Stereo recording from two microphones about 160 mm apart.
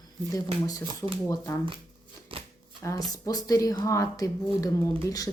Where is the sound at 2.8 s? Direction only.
20° left (ahead or behind).